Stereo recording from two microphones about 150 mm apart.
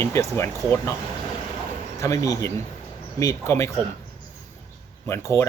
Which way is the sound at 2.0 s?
20° left (ahead or behind).